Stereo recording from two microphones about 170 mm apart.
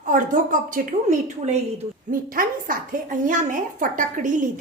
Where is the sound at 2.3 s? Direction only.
55° right (ahead or behind).